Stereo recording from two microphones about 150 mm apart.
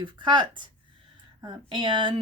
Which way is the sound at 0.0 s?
30° right (ahead or behind).